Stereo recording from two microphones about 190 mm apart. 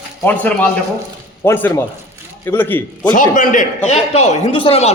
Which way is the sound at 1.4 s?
10° left (ahead or behind).